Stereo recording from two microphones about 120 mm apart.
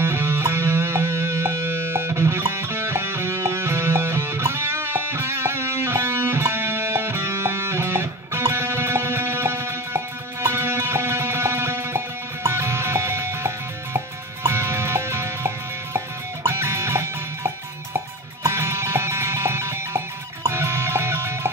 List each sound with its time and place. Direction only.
0.0 s music: 20° right (ahead or behind)